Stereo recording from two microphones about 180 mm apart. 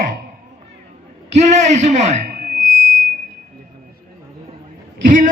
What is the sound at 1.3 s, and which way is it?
A man's voice, 40° right (ahead or behind).